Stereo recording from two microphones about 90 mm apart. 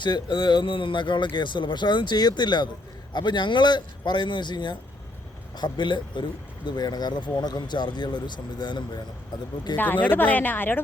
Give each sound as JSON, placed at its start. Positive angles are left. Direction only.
{"t": 0.0, "sound": "speech", "side_deg": 60}
{"t": 9.7, "sound": "a woman's voice", "side_deg": 20}